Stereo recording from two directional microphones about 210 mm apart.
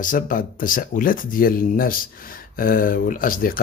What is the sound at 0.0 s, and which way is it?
Speech, 40° left (ahead or behind).